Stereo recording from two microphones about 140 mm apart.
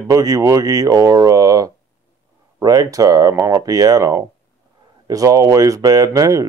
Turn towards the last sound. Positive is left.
turn(degrees=-25)  # may be behind; listen again after turning